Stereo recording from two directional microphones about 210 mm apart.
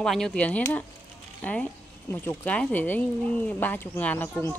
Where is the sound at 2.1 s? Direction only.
10° left (ahead or behind).